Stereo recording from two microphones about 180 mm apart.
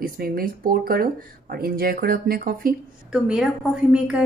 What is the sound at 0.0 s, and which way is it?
Speech, 55° right (ahead or behind).